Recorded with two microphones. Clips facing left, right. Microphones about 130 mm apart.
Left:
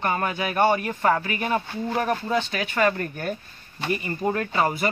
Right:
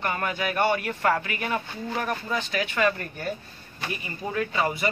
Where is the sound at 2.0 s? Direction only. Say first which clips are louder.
Left 5 dB; 40° left (ahead or behind).